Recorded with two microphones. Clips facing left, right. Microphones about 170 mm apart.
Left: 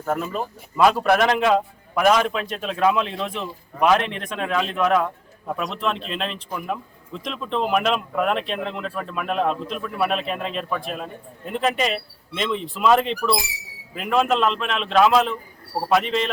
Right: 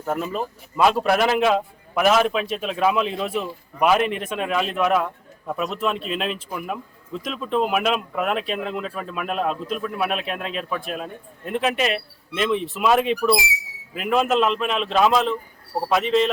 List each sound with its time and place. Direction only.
0.0 s speech: 5° right (ahead or behind)